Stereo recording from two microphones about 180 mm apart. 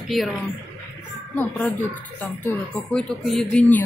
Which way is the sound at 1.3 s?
10° left (ahead or behind).